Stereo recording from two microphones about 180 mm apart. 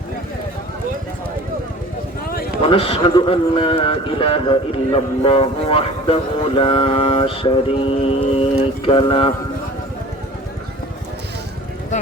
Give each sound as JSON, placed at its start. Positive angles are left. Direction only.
{"t": 2.6, "sound": "speech", "side_deg": 30}